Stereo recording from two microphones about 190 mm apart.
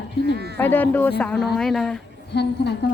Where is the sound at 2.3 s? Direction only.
65° left (ahead or behind).